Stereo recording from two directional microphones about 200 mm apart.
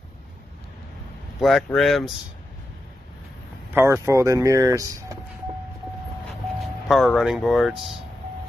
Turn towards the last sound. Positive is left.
turn(degrees=0)  # may be behind; listen again after turning